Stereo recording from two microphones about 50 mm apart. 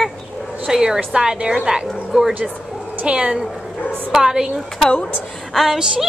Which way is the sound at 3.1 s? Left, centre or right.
Right.